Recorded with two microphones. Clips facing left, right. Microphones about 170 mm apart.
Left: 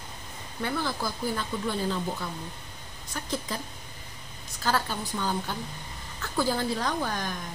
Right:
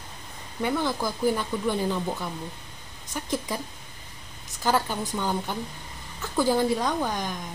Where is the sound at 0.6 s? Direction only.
15° right (ahead or behind).